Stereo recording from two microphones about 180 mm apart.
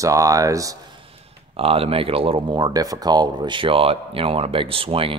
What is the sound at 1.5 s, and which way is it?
Speech, 30° right (ahead or behind).